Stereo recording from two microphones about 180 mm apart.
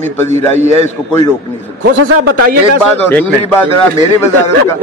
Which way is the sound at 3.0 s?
10° left (ahead or behind).